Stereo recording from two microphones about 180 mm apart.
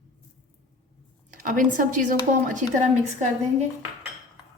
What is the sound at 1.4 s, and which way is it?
Speech, 50° right (ahead or behind).